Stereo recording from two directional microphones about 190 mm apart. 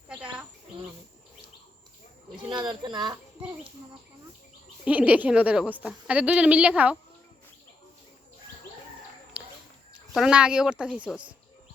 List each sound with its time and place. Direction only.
0.1 s insect: 5° right (ahead or behind)
2.3 s a child's voice: 25° right (ahead or behind)
4.9 s a woman's voice: 5° right (ahead or behind)
9.4 s a sound: 5° right (ahead or behind)
10.2 s speech: 5° right (ahead or behind)